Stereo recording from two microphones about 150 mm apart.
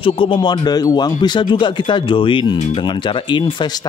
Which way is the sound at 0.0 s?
35° left (ahead or behind).